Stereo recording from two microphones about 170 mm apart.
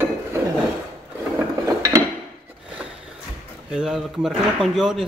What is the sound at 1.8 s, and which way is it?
Dishes, 20° right (ahead or behind).